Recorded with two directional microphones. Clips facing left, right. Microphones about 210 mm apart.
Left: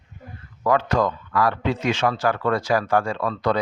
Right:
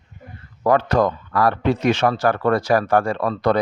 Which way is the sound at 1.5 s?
60° right (ahead or behind).